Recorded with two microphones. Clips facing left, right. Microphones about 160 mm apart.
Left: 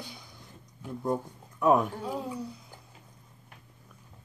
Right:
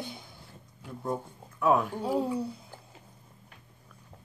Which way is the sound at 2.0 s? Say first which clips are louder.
Right 6 dB; 30° right (ahead or behind).